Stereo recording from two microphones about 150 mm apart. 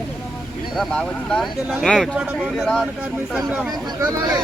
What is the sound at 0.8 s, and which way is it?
Speech, 5° left (ahead or behind).